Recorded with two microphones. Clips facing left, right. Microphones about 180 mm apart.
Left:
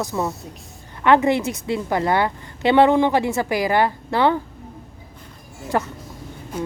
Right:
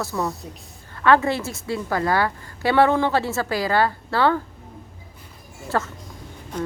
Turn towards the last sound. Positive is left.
turn(degrees=10)  # may be behind; listen again after turning